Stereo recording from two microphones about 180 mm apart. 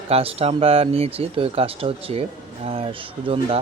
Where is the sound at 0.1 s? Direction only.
30° right (ahead or behind).